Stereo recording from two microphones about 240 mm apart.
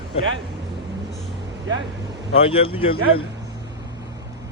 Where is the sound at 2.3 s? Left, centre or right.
Left.